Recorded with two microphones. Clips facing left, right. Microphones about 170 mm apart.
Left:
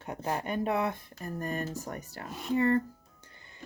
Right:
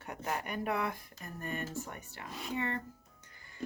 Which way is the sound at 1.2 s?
35° left (ahead or behind).